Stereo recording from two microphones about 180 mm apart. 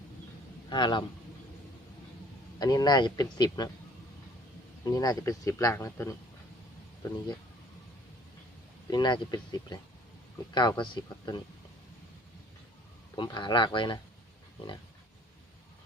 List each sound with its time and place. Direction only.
0.7 s speech: 25° left (ahead or behind)
2.6 s speech: 20° left (ahead or behind)
4.9 s speech: 20° left (ahead or behind)
8.9 s speech: 25° left (ahead or behind)
13.1 s speech: 25° left (ahead or behind)